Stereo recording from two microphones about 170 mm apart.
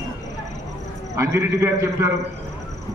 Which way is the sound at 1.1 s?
15° right (ahead or behind).